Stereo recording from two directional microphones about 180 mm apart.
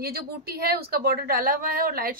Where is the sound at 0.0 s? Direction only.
60° right (ahead or behind).